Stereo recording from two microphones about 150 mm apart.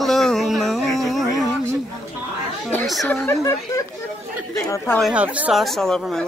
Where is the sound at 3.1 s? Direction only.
15° left (ahead or behind).